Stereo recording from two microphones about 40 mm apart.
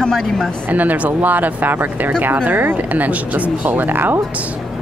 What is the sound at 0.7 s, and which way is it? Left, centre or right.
Speech, right.